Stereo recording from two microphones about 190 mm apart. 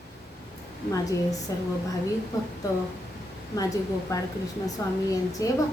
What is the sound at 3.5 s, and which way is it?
A woman's voice, 20° left (ahead or behind).